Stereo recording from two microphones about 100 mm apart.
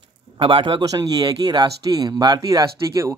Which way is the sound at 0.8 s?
40° right (ahead or behind).